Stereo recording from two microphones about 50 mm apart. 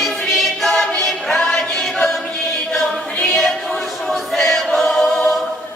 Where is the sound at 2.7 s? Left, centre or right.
Left.